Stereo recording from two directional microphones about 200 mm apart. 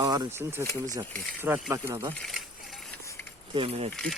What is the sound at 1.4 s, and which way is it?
Speech, 10° right (ahead or behind).